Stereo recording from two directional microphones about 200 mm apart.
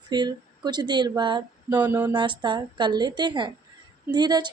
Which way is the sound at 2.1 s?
20° right (ahead or behind).